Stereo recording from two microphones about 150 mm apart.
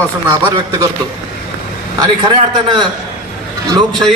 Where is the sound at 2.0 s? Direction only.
30° right (ahead or behind).